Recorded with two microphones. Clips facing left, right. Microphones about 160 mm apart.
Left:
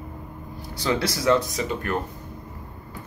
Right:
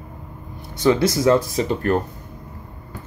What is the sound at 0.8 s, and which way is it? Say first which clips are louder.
Speech: right 7 dB; 25° right (ahead or behind).